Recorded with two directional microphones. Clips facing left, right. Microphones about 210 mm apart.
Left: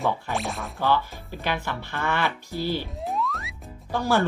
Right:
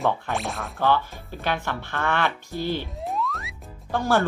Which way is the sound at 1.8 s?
55° right (ahead or behind).